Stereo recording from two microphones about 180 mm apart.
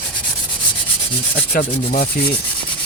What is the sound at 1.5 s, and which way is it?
Rub, 55° left (ahead or behind).